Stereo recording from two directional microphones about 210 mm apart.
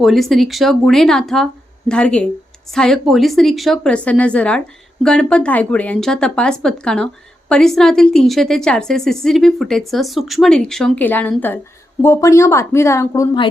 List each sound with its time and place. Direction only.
0.0 s a woman's voice: centre (ahead or behind); by 13.5 s 20° left (ahead or behind)